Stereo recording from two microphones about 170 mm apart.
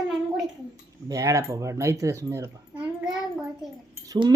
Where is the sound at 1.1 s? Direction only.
20° right (ahead or behind).